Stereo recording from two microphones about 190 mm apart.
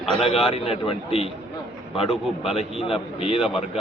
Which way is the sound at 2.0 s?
Centre (ahead or behind).